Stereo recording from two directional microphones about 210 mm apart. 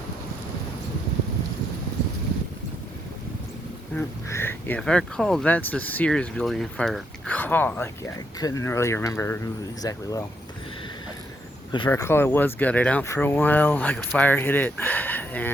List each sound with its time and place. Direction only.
3.9 s speech: 10° left (ahead or behind)
11.9 s speech: 10° left (ahead or behind)